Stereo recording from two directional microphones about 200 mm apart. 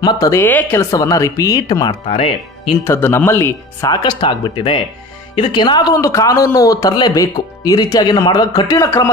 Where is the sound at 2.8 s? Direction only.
10° left (ahead or behind).